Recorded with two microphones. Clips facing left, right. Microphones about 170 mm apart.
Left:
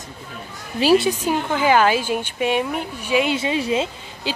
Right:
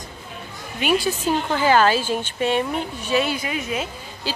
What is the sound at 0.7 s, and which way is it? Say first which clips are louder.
Speech: left 5 dB; 30° left (ahead or behind).